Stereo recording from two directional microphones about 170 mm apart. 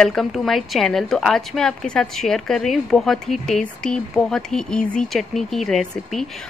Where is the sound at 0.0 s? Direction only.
Centre (ahead or behind).